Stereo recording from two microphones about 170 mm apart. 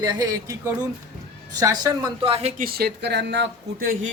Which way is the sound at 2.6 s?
65° right (ahead or behind).